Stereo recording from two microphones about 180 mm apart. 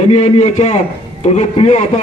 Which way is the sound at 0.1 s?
40° left (ahead or behind).